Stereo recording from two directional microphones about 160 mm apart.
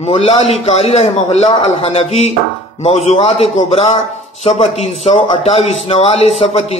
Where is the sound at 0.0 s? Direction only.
40° left (ahead or behind).